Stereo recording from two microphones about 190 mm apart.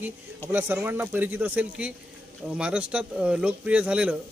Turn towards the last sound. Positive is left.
turn(degrees=-5)  # may be behind; listen again after turning